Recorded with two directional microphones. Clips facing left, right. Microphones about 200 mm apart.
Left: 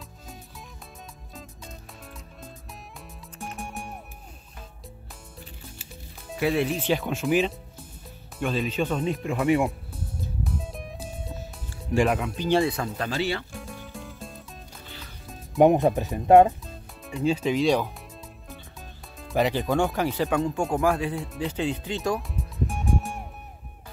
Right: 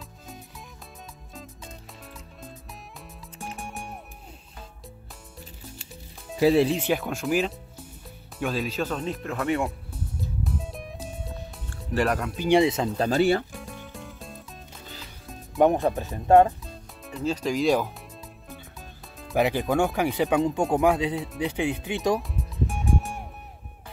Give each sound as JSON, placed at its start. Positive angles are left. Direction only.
{"t": 1.3, "sound": "music", "side_deg": 0}
{"t": 3.5, "sound": "music", "side_deg": 0}
{"t": 6.4, "sound": "speech", "side_deg": -30}
{"t": 6.8, "sound": "speech", "side_deg": -5}
{"t": 10.4, "sound": "music", "side_deg": 0}
{"t": 12.4, "sound": "speech", "side_deg": -20}
{"t": 13.1, "sound": "speech", "side_deg": -45}
{"t": 13.5, "sound": "music", "side_deg": 0}
{"t": 15.6, "sound": "speech", "side_deg": 20}
{"t": 16.6, "sound": "speech", "side_deg": 0}
{"t": 18.5, "sound": "music", "side_deg": 0}
{"t": 19.3, "sound": "speech", "side_deg": -10}
{"t": 22.3, "sound": "music", "side_deg": 0}